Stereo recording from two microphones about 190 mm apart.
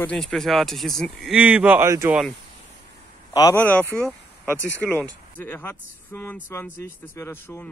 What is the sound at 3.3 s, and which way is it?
Speech, 20° left (ahead or behind).